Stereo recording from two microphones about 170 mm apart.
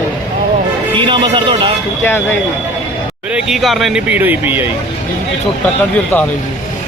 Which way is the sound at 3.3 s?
Centre (ahead or behind).